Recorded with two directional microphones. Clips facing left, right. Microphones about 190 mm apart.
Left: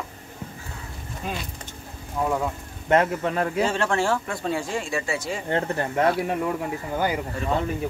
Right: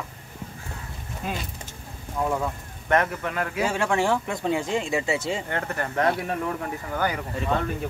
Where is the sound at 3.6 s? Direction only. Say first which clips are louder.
Right 3 dB; 10° right (ahead or behind).